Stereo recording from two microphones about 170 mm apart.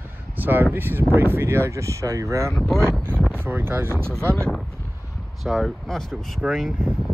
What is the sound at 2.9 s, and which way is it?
Speech, 15° right (ahead or behind).